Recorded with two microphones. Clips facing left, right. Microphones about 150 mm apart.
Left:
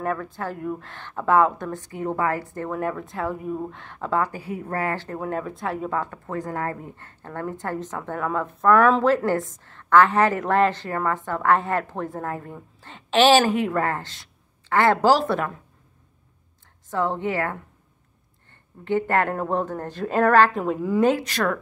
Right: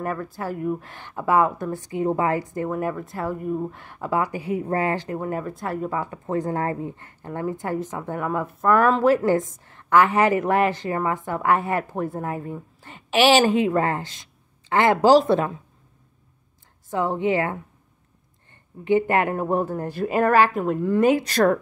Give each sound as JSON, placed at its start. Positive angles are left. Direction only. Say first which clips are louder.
{"t": 0.0, "sound": "speech", "louder": "left 1 dB", "side_deg": -5}
{"t": 5.2, "sound": "speech", "louder": "even", "side_deg": 0}
{"t": 6.2, "sound": "speech", "louder": "right 4 dB", "side_deg": -25}
{"t": 16.9, "sound": "speech", "louder": "right 2 dB", "side_deg": -15}
{"t": 18.9, "sound": "speech", "louder": "right 2 dB", "side_deg": -15}
{"t": 20.6, "sound": "speech", "louder": "right 2 dB", "side_deg": 5}
{"t": 21.2, "sound": "speech", "louder": "right 6 dB", "side_deg": -35}